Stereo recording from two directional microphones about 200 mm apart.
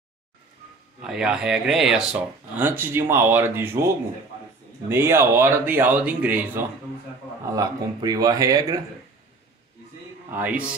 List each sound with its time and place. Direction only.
1.0 s speech: 5° right (ahead or behind); by 8.8 s 20° right (ahead or behind)
10.3 s speech: 10° right (ahead or behind)